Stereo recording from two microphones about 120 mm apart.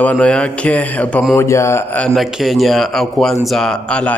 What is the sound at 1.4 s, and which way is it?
Speech, 25° left (ahead or behind).